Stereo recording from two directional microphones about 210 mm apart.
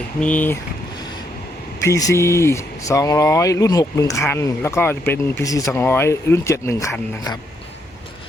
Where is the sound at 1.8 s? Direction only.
15° left (ahead or behind).